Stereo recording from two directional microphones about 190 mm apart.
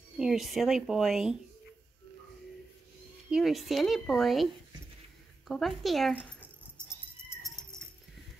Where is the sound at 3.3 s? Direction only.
Centre (ahead or behind).